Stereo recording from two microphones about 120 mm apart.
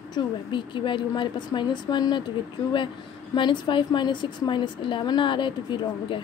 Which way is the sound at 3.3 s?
40° left (ahead or behind).